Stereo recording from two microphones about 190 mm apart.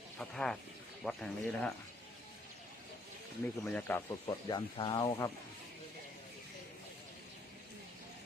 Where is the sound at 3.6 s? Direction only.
5° left (ahead or behind).